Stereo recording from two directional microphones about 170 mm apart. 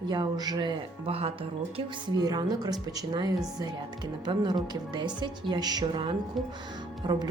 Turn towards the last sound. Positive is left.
turn(degrees=-25)  # may be behind; listen again after turning